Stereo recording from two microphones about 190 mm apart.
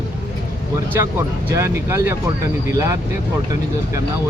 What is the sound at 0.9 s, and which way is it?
Speech, 15° right (ahead or behind).